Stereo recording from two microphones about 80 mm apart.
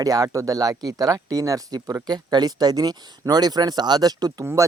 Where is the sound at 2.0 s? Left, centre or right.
Right.